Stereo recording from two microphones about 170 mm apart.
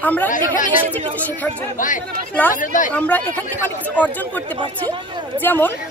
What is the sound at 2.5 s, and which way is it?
Speech, 50° left (ahead or behind).